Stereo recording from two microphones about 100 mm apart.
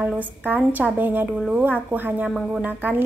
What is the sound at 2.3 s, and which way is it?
Speech, 10° right (ahead or behind).